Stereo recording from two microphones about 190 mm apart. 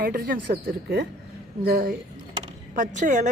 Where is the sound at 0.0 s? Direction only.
50° right (ahead or behind).